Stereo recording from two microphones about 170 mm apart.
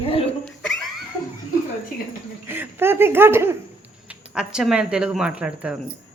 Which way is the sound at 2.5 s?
10° right (ahead or behind).